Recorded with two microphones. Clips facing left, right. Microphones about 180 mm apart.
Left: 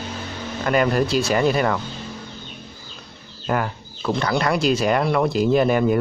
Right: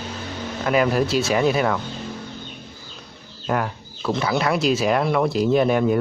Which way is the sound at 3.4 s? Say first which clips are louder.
Even; centre (ahead or behind).